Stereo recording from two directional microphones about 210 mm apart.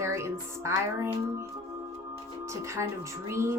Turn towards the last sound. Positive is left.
turn(degrees=-15)  # may be behind; listen again after turning